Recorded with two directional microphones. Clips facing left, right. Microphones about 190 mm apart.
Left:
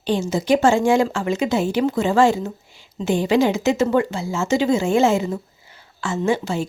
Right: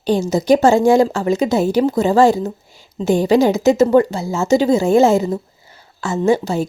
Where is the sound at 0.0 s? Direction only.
40° right (ahead or behind).